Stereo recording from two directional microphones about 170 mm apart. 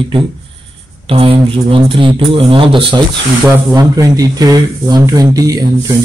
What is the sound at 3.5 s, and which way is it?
Speech, 25° right (ahead or behind).